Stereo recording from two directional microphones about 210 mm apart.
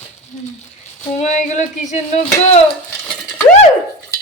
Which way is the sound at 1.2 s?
35° left (ahead or behind).